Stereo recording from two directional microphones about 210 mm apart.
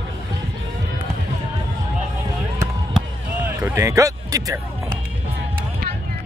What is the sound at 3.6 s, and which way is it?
Speech, 15° right (ahead or behind).